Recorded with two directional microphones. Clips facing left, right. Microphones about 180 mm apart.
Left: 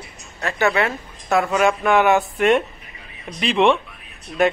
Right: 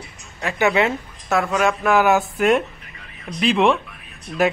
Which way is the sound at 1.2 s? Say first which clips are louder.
Left 2 dB; centre (ahead or behind).